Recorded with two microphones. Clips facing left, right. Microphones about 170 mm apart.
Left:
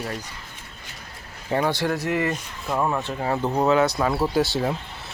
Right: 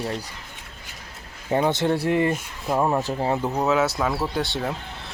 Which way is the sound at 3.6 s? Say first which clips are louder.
Left 3 dB; 5° right (ahead or behind).